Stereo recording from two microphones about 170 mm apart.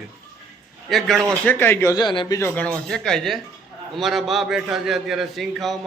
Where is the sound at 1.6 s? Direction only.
15° left (ahead or behind).